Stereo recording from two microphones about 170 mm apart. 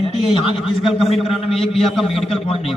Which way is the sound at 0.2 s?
35° left (ahead or behind).